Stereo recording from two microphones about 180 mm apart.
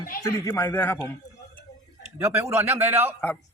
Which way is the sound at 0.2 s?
15° left (ahead or behind).